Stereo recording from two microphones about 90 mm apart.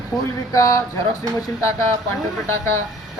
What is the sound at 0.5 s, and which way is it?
Speech, 35° left (ahead or behind).